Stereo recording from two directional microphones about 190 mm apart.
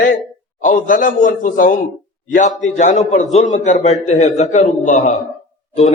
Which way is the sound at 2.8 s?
40° left (ahead or behind).